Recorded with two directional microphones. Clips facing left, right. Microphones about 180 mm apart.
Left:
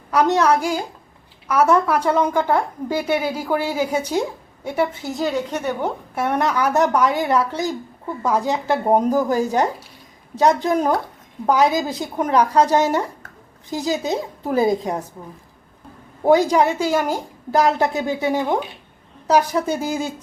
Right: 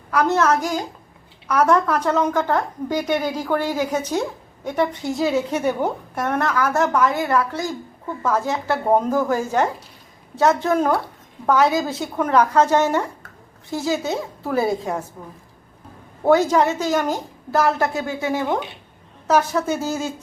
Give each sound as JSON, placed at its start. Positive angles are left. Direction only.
{"t": 0.1, "sound": "a woman's voice", "side_deg": 20}
{"t": 6.1, "sound": "a woman's voice", "side_deg": 10}
{"t": 16.2, "sound": "a woman's voice", "side_deg": 15}